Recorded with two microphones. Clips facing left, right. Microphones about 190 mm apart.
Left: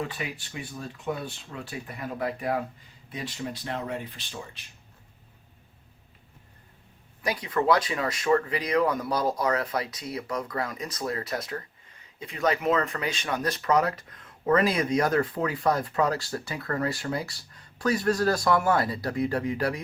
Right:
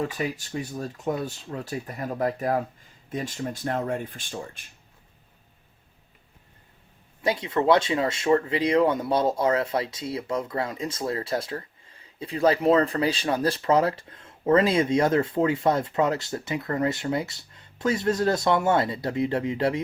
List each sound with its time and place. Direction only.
0.0 s speech: 40° right (ahead or behind)
7.2 s speech: 25° right (ahead or behind)